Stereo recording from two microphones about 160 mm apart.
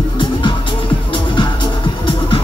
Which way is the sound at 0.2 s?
30° left (ahead or behind).